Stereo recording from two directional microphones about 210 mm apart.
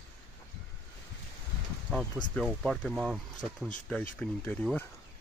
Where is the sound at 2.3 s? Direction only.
Centre (ahead or behind).